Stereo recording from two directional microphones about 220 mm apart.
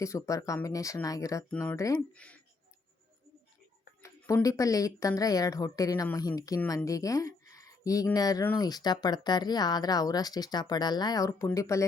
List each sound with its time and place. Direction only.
0.0 s speech: 15° left (ahead or behind)
4.0 s speech: 15° left (ahead or behind)